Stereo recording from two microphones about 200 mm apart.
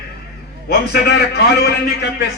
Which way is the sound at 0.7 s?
55° left (ahead or behind).